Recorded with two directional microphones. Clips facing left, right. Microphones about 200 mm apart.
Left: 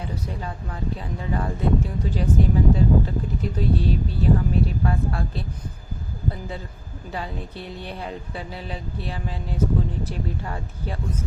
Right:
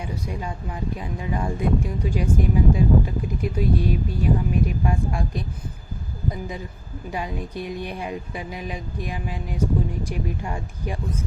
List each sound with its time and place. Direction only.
0.0 s speech: 15° right (ahead or behind)
7.1 s speech: 15° right (ahead or behind)